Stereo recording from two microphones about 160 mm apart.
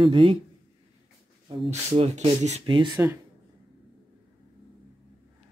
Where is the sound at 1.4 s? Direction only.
35° right (ahead or behind).